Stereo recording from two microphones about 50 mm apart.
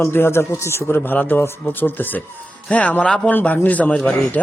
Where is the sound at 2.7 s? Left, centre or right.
Left.